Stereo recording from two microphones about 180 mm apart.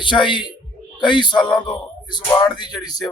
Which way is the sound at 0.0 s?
25° left (ahead or behind).